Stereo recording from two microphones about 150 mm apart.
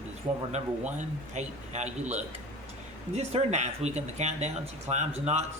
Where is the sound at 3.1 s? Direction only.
45° right (ahead or behind).